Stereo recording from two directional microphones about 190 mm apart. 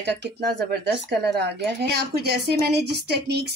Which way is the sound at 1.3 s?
60° right (ahead or behind).